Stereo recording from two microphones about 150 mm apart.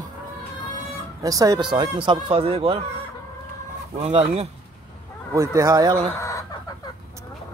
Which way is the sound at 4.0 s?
45° right (ahead or behind).